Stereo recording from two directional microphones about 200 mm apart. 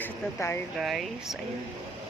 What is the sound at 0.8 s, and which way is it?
Speech, centre (ahead or behind).